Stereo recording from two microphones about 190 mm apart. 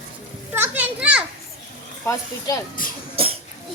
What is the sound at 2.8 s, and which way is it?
Cough, 45° left (ahead or behind).